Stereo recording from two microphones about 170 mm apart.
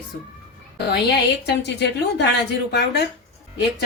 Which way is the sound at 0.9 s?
75° left (ahead or behind).